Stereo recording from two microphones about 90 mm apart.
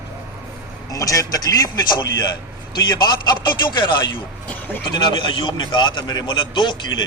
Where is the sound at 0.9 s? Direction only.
40° left (ahead or behind).